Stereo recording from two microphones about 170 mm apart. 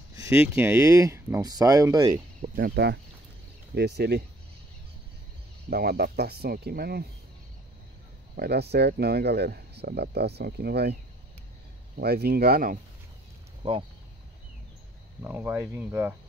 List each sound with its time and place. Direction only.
0.1 s speech: 15° right (ahead or behind)
2.5 s speech: 65° right (ahead or behind)
5.7 s speech: 65° right (ahead or behind)
8.4 s speech: 75° right (ahead or behind)
12.0 s speech: 65° right (ahead or behind)
13.6 s speech: 30° right (ahead or behind)
15.2 s speech: 15° right (ahead or behind)